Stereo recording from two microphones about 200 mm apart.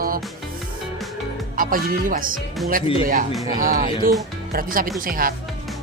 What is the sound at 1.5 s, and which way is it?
Speech, 45° right (ahead or behind).